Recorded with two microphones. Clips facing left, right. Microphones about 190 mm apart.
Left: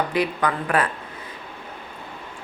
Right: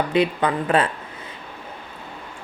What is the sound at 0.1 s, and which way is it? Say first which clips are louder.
Speech: right 3 dB; 25° right (ahead or behind).